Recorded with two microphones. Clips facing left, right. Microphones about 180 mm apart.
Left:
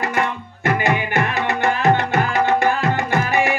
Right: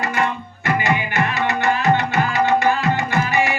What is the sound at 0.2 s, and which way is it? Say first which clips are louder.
Music: even; 55° left (ahead or behind).